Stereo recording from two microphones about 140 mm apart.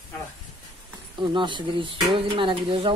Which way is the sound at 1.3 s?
35° right (ahead or behind).